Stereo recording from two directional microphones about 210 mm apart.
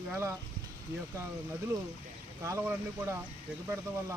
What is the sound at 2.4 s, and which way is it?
Speech, 15° right (ahead or behind).